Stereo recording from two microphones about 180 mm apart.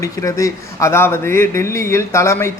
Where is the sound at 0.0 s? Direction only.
20° left (ahead or behind).